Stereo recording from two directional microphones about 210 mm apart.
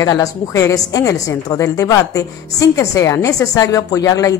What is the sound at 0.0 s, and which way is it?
Speech, 15° left (ahead or behind).